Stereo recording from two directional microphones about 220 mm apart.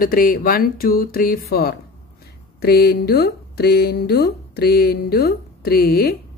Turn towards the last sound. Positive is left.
turn(degrees=45)  # may be behind; listen again after turning